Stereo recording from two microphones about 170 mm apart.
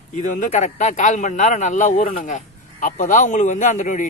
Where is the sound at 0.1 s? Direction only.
45° left (ahead or behind).